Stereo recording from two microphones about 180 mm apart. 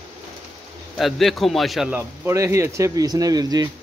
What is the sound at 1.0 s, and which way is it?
A man's voice, centre (ahead or behind).